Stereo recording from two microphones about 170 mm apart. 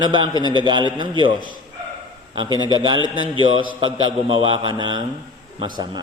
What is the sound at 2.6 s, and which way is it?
A man's voice, 25° right (ahead or behind).